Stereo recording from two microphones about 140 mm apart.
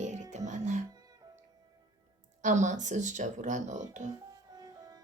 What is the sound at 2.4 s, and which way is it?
Speech, 60° right (ahead or behind).